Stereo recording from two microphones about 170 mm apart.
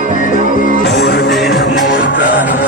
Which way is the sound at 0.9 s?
80° left.